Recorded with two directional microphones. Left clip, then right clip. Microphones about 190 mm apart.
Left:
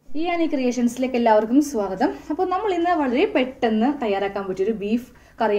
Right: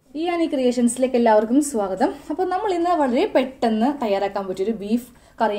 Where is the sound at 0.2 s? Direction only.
20° right (ahead or behind).